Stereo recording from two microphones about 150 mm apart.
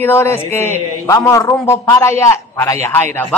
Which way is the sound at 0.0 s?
15° left (ahead or behind).